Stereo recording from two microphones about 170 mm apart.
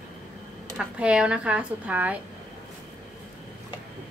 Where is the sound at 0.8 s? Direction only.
5° right (ahead or behind).